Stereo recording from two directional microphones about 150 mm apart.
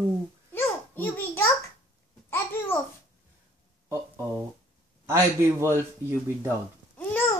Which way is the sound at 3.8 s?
15° right (ahead or behind).